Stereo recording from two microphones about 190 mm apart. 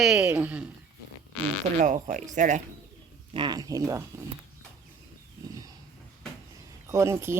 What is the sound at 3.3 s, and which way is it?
Speech, 25° right (ahead or behind).